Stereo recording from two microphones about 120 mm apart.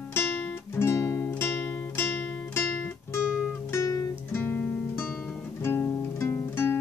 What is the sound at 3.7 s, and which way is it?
Music, 25° left (ahead or behind).